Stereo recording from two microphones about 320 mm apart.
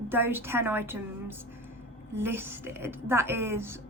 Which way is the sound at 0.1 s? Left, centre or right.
Centre.